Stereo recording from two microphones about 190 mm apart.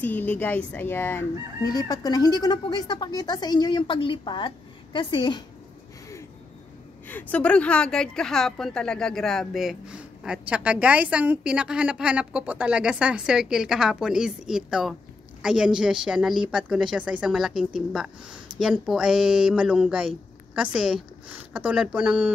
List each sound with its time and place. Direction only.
0.0 s crowing: 10° left (ahead or behind)
7.1 s a woman's voice: 10° left (ahead or behind)